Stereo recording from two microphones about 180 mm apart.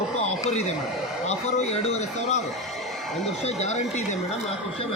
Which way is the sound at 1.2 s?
35° left (ahead or behind).